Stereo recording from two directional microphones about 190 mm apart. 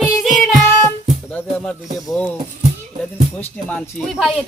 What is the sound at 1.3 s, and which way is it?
Speech, 10° left (ahead or behind).